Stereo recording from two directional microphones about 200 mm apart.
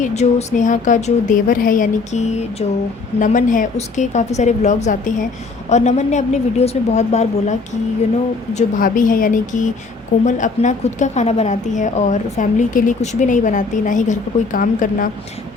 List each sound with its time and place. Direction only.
0.0 s a woman's voice: 35° left (ahead or behind)
8.5 s a woman's voice: 40° left (ahead or behind)